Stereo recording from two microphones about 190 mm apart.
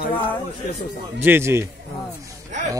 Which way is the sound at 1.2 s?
10° right (ahead or behind).